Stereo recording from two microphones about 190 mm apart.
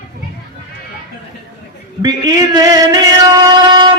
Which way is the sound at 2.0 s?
20° right (ahead or behind).